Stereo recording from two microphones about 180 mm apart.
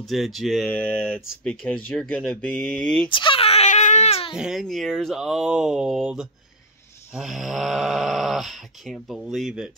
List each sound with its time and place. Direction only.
0.0 s speech: centre (ahead or behind)
3.1 s baby cry: 30° left (ahead or behind)
4.4 s speech: centre (ahead or behind)